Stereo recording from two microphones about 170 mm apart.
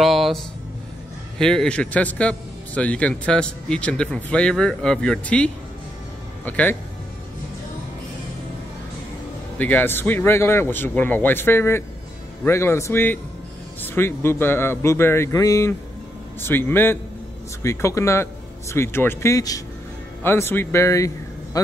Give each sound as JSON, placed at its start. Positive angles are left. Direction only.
{"t": 0.0, "sound": "a sound", "side_deg": 0}
{"t": 1.4, "sound": "a man's voice", "side_deg": 5}
{"t": 9.6, "sound": "a man's voice", "side_deg": 10}